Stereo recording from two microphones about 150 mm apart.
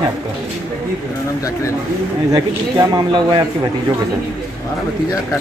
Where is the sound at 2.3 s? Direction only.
25° right (ahead or behind).